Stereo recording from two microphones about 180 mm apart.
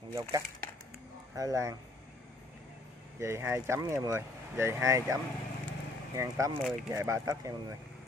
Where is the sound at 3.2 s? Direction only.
15° right (ahead or behind).